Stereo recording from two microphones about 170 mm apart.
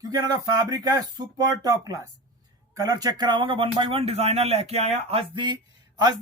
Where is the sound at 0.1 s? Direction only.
20° right (ahead or behind).